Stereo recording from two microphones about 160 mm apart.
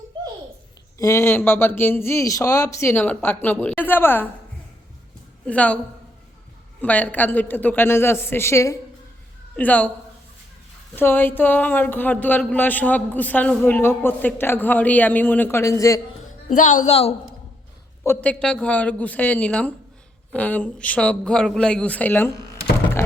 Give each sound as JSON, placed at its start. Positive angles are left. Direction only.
{"t": 0.9, "sound": "speech", "side_deg": 20}
{"t": 5.5, "sound": "speech", "side_deg": 10}
{"t": 6.8, "sound": "speech", "side_deg": 10}
{"t": 10.9, "sound": "speech", "side_deg": 15}
{"t": 16.5, "sound": "a woman's voice", "side_deg": 50}
{"t": 16.9, "sound": "a woman's voice", "side_deg": 35}
{"t": 18.0, "sound": "speech", "side_deg": 10}